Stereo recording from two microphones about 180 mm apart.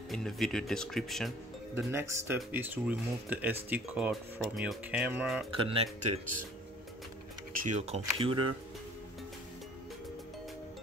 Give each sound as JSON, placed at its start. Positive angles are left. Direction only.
{"t": 0.1, "sound": "speech", "side_deg": 0}
{"t": 1.9, "sound": "speech", "side_deg": -15}
{"t": 5.5, "sound": "speech", "side_deg": -30}
{"t": 7.6, "sound": "speech", "side_deg": -40}